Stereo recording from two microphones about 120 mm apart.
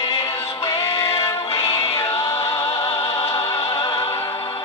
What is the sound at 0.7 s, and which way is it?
Music, 55° left (ahead or behind).